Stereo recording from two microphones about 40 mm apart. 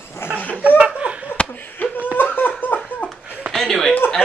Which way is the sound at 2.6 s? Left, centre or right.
Left.